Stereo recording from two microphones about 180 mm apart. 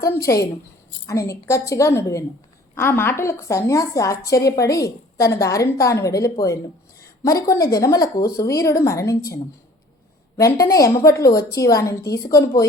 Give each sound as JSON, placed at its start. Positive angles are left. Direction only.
{"t": 0.0, "sound": "a woman's voice", "side_deg": 15}
{"t": 7.5, "sound": "a woman's voice", "side_deg": 20}